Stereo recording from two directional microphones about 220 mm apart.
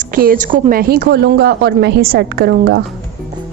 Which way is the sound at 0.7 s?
45° right (ahead or behind).